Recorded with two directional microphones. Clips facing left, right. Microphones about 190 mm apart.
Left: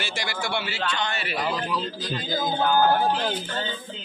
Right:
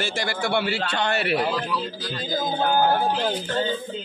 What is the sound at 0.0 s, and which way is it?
Speech, 55° right (ahead or behind).